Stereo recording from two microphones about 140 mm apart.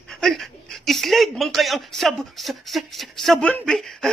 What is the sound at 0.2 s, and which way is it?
Speech, centre (ahead or behind).